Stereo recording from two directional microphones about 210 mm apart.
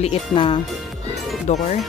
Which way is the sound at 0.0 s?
25° left (ahead or behind).